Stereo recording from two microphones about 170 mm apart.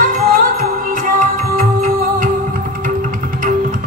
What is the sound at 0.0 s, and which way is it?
Music, 55° right (ahead or behind).